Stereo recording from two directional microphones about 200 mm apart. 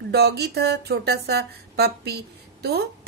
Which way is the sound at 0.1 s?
55° right (ahead or behind).